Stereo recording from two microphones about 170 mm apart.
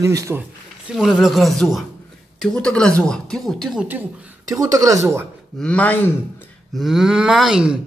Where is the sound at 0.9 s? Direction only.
Centre (ahead or behind).